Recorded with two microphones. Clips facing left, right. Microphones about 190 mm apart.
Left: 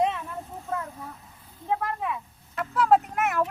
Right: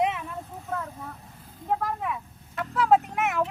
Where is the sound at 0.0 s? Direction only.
15° right (ahead or behind).